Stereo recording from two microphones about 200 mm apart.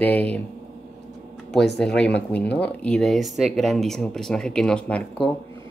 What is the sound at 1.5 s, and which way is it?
Speech, centre (ahead or behind).